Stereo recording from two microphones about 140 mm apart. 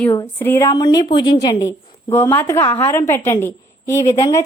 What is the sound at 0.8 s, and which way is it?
A woman's voice, 30° left (ahead or behind).